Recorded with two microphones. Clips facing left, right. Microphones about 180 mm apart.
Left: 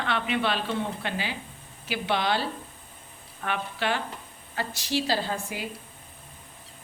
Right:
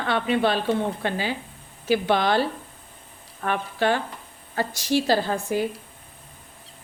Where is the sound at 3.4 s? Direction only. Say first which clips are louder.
Right 6 dB; 45° right (ahead or behind).